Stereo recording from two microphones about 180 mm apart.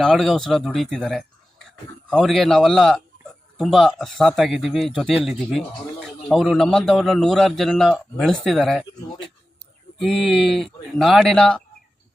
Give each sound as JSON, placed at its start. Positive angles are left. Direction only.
{"t": 0.0, "sound": "speech", "side_deg": 0}
{"t": 10.0, "sound": "speech", "side_deg": 0}